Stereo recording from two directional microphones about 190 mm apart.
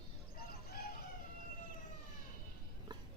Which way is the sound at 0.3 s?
55° left (ahead or behind).